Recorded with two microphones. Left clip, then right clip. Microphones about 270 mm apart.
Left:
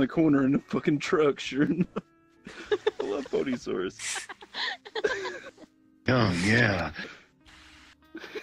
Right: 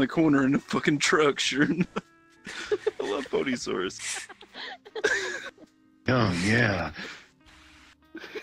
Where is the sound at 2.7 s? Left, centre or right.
Left.